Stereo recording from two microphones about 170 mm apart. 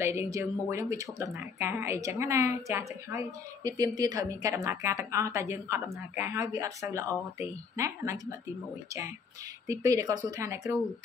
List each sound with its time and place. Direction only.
0.0 s speech: 15° right (ahead or behind)
9.7 s speech: 20° right (ahead or behind)